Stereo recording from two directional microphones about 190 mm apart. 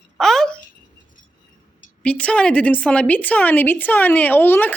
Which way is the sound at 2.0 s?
5° left (ahead or behind).